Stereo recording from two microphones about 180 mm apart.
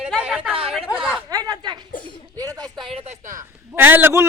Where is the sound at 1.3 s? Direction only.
20° right (ahead or behind).